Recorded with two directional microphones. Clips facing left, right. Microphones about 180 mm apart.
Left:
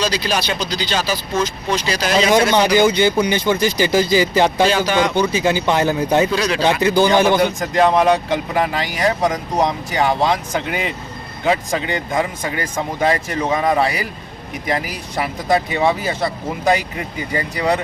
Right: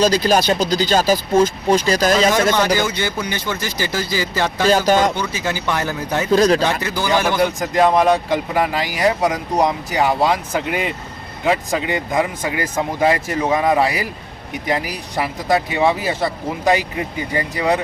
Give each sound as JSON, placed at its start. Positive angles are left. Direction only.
{"t": 0.0, "sound": "speech", "side_deg": -45}
{"t": 2.7, "sound": "speech", "side_deg": 20}
{"t": 4.7, "sound": "speech", "side_deg": -40}
{"t": 5.1, "sound": "speech", "side_deg": 20}
{"t": 6.3, "sound": "speech", "side_deg": -45}
{"t": 6.8, "sound": "speech", "side_deg": 20}
{"t": 7.3, "sound": "speech", "side_deg": 0}
{"t": 15.1, "sound": "speech", "side_deg": 0}